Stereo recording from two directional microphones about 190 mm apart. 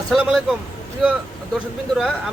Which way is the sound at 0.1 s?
Centre (ahead or behind).